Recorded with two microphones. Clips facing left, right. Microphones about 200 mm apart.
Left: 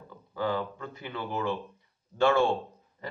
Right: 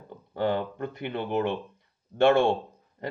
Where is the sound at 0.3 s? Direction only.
60° right (ahead or behind).